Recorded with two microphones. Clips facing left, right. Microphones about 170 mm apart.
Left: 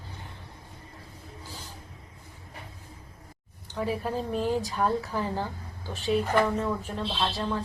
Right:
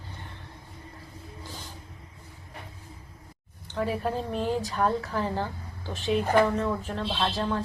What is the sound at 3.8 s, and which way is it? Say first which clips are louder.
Speech: right 1 dB; 40° right (ahead or behind).